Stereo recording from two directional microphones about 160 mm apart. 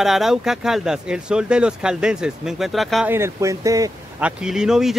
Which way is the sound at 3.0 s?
15° right (ahead or behind).